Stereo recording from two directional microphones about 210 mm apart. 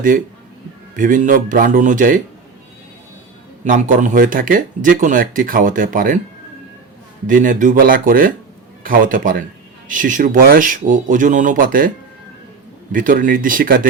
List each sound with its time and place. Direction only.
0.9 s speech: 40° right (ahead or behind)
3.6 s speech: 35° right (ahead or behind)
7.3 s a man's voice: 40° right (ahead or behind)
12.9 s speech: 40° right (ahead or behind)